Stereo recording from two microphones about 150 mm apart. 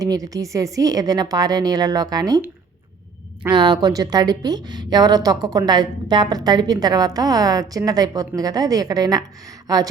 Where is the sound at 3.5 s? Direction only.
30° right (ahead or behind).